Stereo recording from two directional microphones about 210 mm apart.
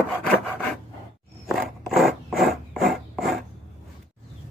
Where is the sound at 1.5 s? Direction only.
Centre (ahead or behind).